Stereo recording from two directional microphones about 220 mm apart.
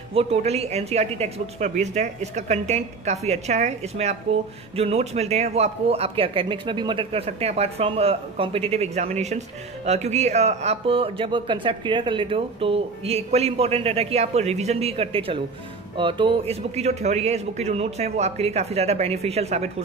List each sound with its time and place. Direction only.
0.1 s speech: 25° right (ahead or behind)